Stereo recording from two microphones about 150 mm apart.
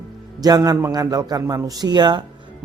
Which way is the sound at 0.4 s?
25° right (ahead or behind).